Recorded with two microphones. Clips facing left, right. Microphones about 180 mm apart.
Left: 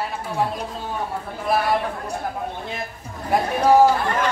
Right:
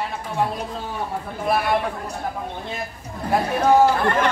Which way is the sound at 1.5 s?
Centre (ahead or behind).